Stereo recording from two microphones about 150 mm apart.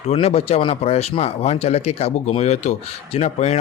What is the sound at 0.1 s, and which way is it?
Speech, 45° left (ahead or behind).